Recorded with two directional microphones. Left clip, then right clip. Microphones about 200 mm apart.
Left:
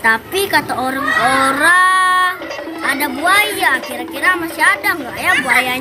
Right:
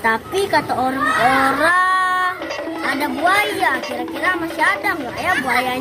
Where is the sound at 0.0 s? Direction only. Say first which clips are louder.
Left 4 dB; 5° right (ahead or behind).